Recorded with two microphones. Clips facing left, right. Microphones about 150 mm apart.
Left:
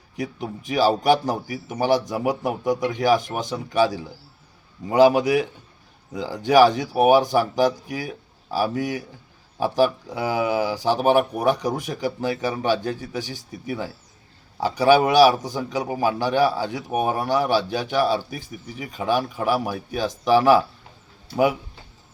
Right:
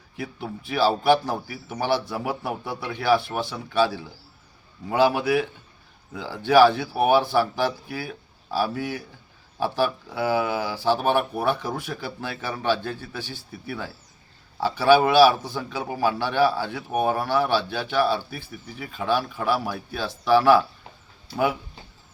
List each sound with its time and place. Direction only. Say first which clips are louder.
0.7 s a man's voice: left 1 dB; 15° left (ahead or behind)
6.5 s a man's voice: left 1 dB; 15° left (ahead or behind)